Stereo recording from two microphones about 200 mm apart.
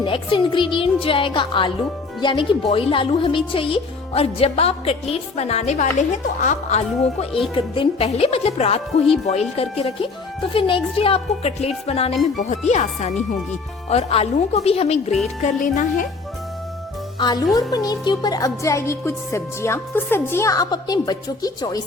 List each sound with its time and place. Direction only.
0.0 s a woman's voice: 25° left (ahead or behind); by 16.0 s 40° left (ahead or behind)
17.2 s a woman's voice: 20° left (ahead or behind)